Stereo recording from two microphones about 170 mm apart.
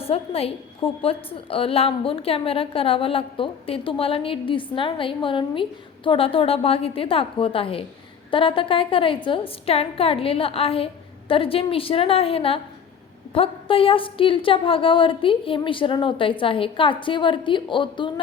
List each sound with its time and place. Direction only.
0.0 s a woman's voice: 35° left (ahead or behind)